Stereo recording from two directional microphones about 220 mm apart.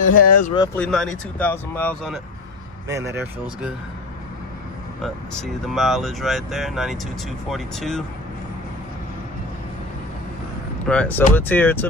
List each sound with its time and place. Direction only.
0.1 s speech: 40° left (ahead or behind)
0.7 s speech: 5° left (ahead or behind)
2.9 s speech: 15° right (ahead or behind)
5.0 s speech: centre (ahead or behind)
10.9 s speech: 5° left (ahead or behind)